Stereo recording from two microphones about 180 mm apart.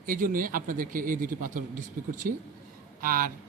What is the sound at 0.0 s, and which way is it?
Speech, 50° right (ahead or behind).